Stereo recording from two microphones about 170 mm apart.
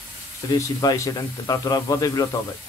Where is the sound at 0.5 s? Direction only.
25° left (ahead or behind).